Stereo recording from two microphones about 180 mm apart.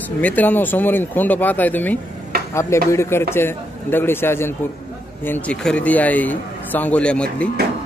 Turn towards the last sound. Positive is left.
turn(degrees=5)  # may be behind; listen again after turning